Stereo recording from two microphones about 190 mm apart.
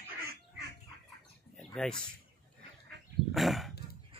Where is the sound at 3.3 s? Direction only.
Centre (ahead or behind).